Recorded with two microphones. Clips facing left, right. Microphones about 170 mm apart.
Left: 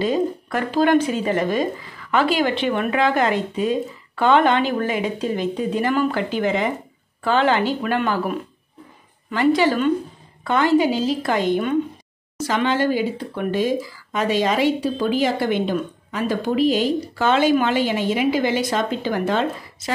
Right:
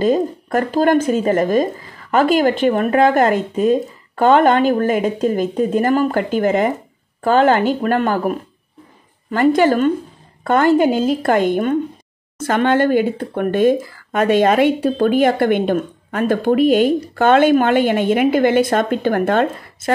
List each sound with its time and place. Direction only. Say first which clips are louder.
0.0 s speech: right 4 dB; 45° right (ahead or behind)